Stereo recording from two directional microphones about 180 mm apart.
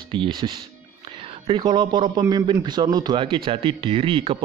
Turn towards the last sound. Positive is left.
turn(degrees=-30)  # may be behind; listen again after turning